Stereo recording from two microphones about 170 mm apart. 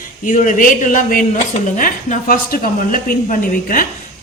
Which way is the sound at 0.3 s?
50° left (ahead or behind).